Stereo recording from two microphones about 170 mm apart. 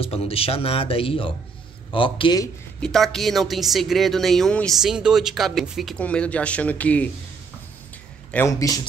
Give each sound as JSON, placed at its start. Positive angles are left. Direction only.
{"t": 0.0, "sound": "speech", "side_deg": 35}
{"t": 2.8, "sound": "speech", "side_deg": 5}
{"t": 8.3, "sound": "speech", "side_deg": 15}